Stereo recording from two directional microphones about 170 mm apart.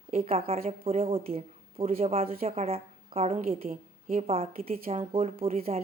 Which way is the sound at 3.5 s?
55° right (ahead or behind).